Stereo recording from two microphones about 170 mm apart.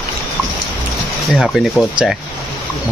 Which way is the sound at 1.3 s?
Centre (ahead or behind).